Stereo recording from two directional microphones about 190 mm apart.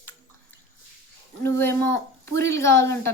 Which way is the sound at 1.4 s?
10° left (ahead or behind).